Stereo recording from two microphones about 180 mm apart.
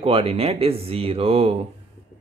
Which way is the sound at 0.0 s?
30° right (ahead or behind).